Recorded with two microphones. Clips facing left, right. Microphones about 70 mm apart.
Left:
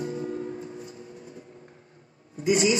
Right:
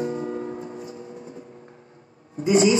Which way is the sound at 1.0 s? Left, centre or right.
Right.